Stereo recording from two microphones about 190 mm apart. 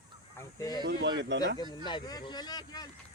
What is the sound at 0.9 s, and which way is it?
Speech, 60° right (ahead or behind).